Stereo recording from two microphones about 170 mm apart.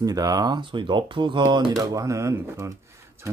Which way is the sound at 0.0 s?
20° right (ahead or behind).